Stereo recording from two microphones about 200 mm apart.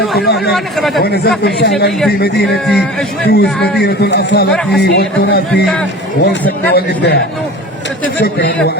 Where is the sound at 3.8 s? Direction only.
50° left (ahead or behind).